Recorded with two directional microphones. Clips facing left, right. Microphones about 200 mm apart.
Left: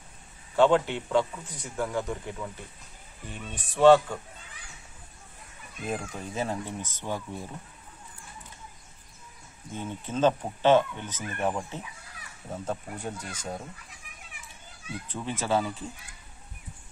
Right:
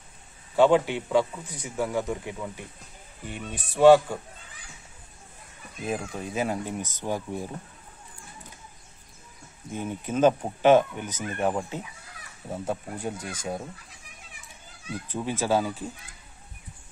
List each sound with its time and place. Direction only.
0.6 s a man's voice: 10° right (ahead or behind)
5.9 s a man's voice: 10° right (ahead or behind)
9.7 s a man's voice: 10° right (ahead or behind)
15.1 s a man's voice: 10° right (ahead or behind)